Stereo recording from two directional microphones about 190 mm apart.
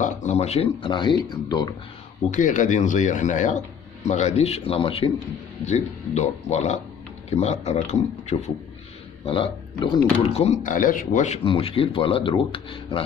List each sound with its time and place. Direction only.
0.0 s speech: 40° left (ahead or behind); by 1.8 s 20° left (ahead or behind)
2.3 s speech: 40° left (ahead or behind)